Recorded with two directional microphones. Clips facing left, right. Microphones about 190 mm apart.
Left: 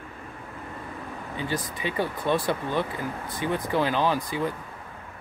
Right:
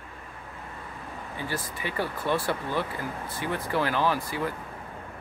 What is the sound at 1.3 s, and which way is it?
Speech, 20° left (ahead or behind).